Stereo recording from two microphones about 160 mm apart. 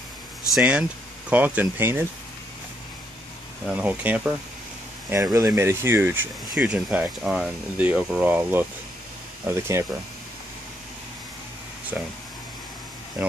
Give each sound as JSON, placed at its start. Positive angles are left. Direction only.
{"t": 0.6, "sound": "speech", "side_deg": -5}
{"t": 3.6, "sound": "speech", "side_deg": -10}
{"t": 11.9, "sound": "speech", "side_deg": -5}